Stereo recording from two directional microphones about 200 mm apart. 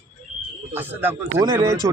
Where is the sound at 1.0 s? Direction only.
10° right (ahead or behind).